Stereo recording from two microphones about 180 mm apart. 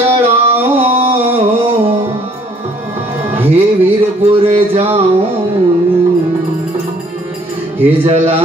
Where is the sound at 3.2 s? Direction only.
10° right (ahead or behind).